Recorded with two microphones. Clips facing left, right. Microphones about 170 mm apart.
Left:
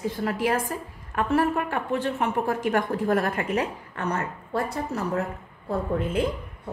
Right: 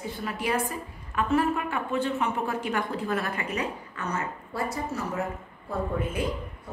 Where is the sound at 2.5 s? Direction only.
50° left (ahead or behind).